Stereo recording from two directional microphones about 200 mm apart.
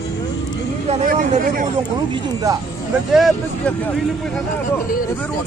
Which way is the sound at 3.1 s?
Centre (ahead or behind).